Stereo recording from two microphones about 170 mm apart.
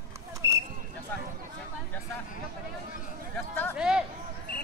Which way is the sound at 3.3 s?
10° left (ahead or behind).